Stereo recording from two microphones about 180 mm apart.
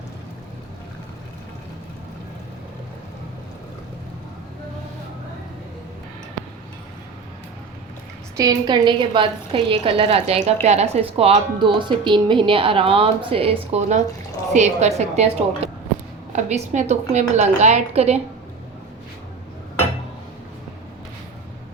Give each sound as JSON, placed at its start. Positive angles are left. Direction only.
{"t": 8.4, "sound": "a woman's voice", "side_deg": -20}